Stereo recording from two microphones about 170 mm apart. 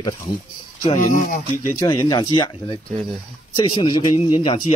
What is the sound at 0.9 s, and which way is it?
Speech, 45° left (ahead or behind).